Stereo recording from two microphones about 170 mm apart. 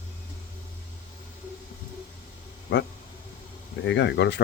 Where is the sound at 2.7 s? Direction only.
90° left.